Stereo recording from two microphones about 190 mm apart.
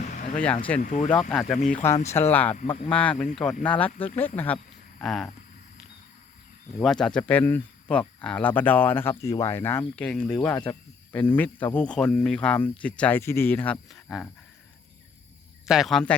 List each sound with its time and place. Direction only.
0.0 s a sound: 40° left (ahead or behind)
0.3 s speech: 5° left (ahead or behind)
0.8 s speech: 40° left (ahead or behind)
1.3 s speech: 5° left (ahead or behind)
1.7 s speech: 15° left (ahead or behind)
6.7 s speech: centre (ahead or behind)
15.6 s speech: centre (ahead or behind)